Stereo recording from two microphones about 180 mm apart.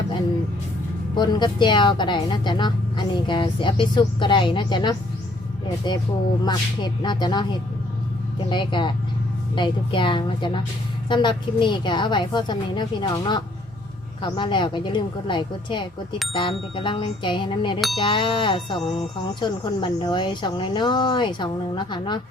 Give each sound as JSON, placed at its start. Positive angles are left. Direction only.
{"t": 1.1, "sound": "speech", "side_deg": 25}